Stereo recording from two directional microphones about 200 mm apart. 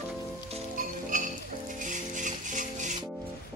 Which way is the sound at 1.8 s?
40° right (ahead or behind).